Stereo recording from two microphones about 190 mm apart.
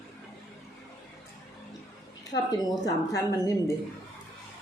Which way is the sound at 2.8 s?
20° left (ahead or behind).